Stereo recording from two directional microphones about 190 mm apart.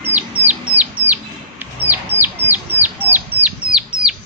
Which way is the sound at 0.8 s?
10° right (ahead or behind).